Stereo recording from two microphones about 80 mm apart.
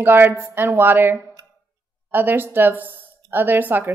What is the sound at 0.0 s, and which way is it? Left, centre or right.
A woman's voice, right.